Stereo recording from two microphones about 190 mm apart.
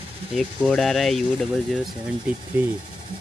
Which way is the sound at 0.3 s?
Centre (ahead or behind).